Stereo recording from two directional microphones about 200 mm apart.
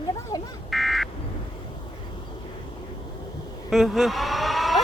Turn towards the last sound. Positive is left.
turn(degrees=0)  # may be behind; listen again after turning